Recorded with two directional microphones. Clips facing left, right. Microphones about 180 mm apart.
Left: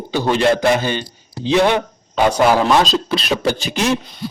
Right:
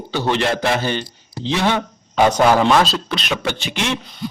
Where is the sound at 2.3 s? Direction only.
5° left (ahead or behind).